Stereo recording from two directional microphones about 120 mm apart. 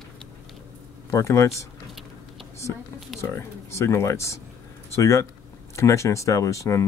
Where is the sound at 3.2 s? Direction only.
25° left (ahead or behind).